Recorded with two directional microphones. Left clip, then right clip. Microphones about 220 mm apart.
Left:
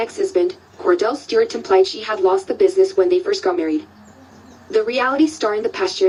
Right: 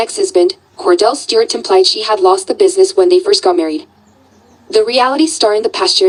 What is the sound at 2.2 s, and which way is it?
A woman's voice, 50° right (ahead or behind).